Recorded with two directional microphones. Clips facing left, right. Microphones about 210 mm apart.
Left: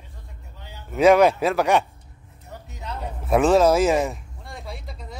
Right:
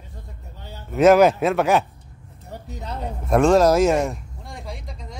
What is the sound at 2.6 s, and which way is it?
Speech, 35° right (ahead or behind).